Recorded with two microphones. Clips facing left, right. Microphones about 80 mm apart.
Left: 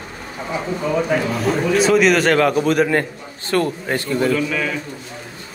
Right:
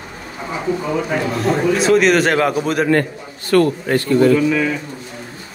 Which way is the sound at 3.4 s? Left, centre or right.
Left.